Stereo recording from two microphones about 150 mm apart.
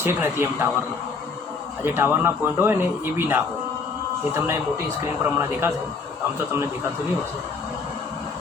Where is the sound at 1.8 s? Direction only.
15° right (ahead or behind).